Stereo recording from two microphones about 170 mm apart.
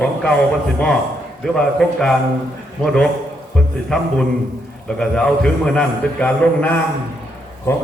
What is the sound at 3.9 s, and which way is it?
A man's voice, 5° left (ahead or behind).